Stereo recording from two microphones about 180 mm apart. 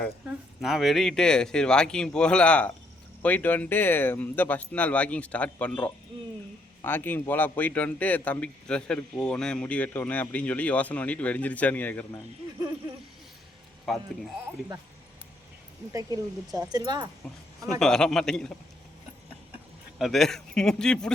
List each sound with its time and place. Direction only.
0.3 s a man's voice: centre (ahead or behind)
13.9 s speech: centre (ahead or behind)
15.9 s speech: 20° right (ahead or behind)
17.7 s speech: 5° left (ahead or behind)
20.0 s speech: centre (ahead or behind)